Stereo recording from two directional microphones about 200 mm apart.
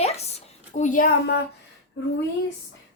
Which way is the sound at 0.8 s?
40° left (ahead or behind).